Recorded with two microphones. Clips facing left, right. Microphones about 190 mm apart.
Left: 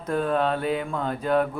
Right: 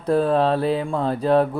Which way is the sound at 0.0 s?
35° right (ahead or behind).